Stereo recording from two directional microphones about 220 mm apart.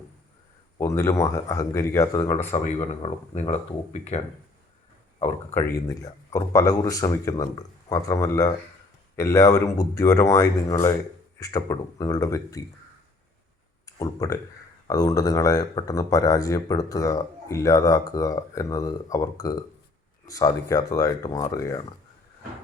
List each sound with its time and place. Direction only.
0.8 s speech: 10° left (ahead or behind)
2.1 s speech: 30° left (ahead or behind)
5.7 s speech: 15° left (ahead or behind)
13.8 s speech: 15° left (ahead or behind)